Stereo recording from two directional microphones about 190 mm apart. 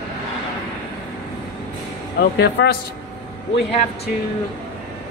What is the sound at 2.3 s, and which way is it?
Speech, 60° left (ahead or behind).